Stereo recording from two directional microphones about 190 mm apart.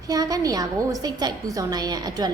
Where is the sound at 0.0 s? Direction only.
20° right (ahead or behind).